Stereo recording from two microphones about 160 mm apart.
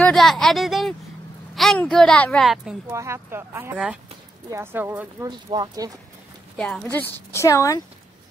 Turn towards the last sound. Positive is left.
turn(degrees=20)  # may be behind; listen again after turning